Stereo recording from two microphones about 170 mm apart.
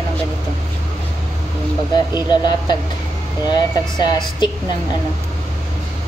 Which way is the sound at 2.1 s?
25° left (ahead or behind).